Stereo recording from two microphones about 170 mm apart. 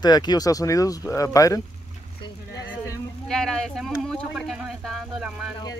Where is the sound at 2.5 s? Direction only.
20° left (ahead or behind).